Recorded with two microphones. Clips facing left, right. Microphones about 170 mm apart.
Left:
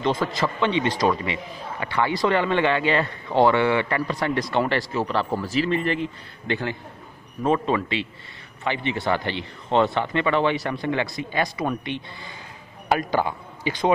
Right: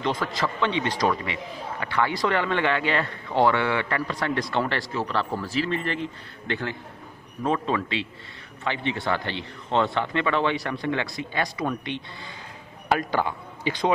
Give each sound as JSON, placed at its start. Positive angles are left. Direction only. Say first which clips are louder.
{"t": 0.4, "sound": "speech", "louder": "left 3 dB", "side_deg": 15}